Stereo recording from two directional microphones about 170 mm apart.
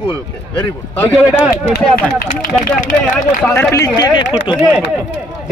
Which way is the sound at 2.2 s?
50° left (ahead or behind).